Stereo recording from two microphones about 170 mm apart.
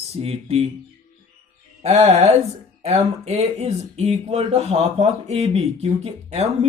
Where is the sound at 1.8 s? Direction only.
40° right (ahead or behind).